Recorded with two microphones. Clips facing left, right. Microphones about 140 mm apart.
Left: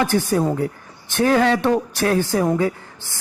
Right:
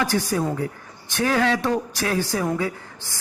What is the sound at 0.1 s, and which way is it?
A man's voice, 40° left (ahead or behind).